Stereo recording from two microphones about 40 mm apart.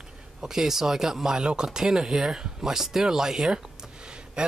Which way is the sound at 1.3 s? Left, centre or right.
Right.